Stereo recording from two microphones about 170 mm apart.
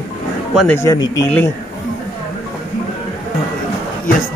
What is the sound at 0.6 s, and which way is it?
Speech, 15° left (ahead or behind).